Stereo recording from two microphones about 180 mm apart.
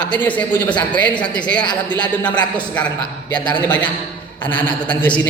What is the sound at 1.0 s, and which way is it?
Speech, 25° left (ahead or behind).